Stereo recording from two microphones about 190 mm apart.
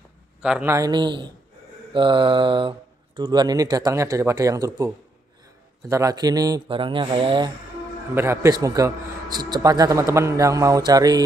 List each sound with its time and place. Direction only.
0.4 s speech: 5° right (ahead or behind); by 7.5 s 25° right (ahead or behind)
8.1 s a man's voice: 15° right (ahead or behind)